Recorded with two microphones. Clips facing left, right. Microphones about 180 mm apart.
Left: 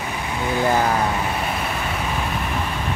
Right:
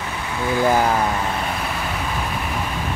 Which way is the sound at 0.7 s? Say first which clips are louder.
Right 2 dB; 10° right (ahead or behind).